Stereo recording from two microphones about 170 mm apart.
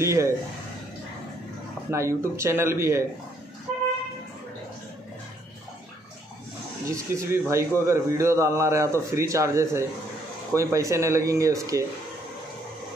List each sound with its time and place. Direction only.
0.0 s a man's voice: 15° right (ahead or behind)
1.9 s a man's voice: 15° right (ahead or behind)
6.9 s a man's voice: 15° right (ahead or behind)